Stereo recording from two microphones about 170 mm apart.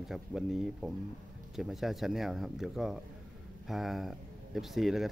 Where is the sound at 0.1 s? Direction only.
Centre (ahead or behind).